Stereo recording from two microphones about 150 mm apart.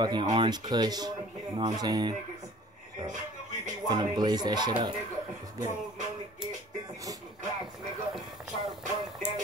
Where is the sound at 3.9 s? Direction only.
30° right (ahead or behind).